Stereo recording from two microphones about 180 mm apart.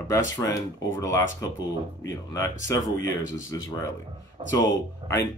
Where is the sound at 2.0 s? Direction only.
20° left (ahead or behind).